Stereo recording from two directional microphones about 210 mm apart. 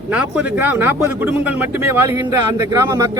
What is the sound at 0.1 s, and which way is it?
A man's voice, 5° right (ahead or behind).